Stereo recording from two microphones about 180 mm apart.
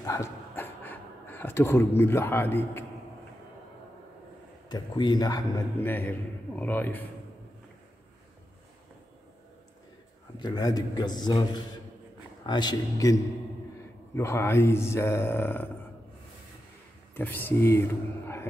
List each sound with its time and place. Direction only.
0.0 s speech: 15° left (ahead or behind)
4.6 s a man's voice: 25° left (ahead or behind)
5.8 s speech: 10° left (ahead or behind)
10.4 s a man's voice: 20° left (ahead or behind)
17.1 s speech: 10° left (ahead or behind)